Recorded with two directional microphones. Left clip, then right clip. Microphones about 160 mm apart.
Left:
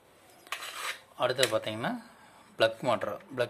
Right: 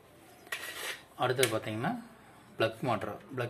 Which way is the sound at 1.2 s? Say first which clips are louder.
Left 2 dB; 35° left (ahead or behind).